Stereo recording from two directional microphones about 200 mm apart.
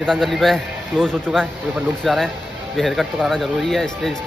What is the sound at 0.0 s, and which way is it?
Speech, centre (ahead or behind).